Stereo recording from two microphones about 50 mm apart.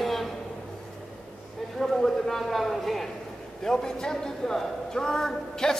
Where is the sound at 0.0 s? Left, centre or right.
Centre.